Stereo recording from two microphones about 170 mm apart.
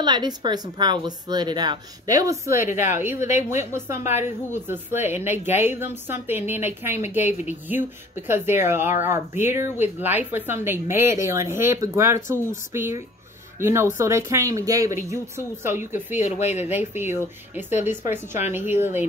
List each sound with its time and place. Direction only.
0.0 s a woman's voice: 25° right (ahead or behind)
16.2 s speech: 40° left (ahead or behind)
16.6 s speech: 10° right (ahead or behind)